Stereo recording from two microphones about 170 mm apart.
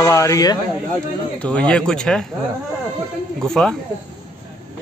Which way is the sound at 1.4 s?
5° left (ahead or behind).